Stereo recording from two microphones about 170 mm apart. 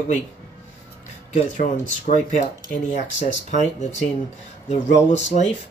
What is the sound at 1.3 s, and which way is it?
Speech, 50° left (ahead or behind).